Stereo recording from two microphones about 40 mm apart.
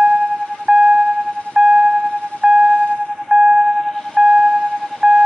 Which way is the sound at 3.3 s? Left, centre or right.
Centre.